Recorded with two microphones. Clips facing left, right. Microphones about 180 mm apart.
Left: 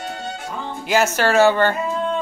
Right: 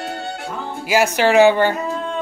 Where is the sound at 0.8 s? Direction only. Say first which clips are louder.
Right 2 dB; 10° right (ahead or behind).